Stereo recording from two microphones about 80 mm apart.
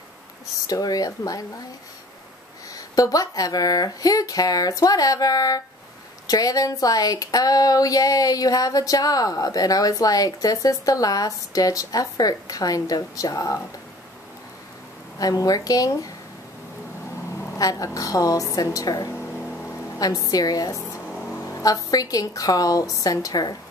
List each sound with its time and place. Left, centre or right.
0.7 s speech: left
2.7 s speech: left
15.1 s speech: left
17.6 s speech: left
19.1 s a sound: left
20.0 s speech: left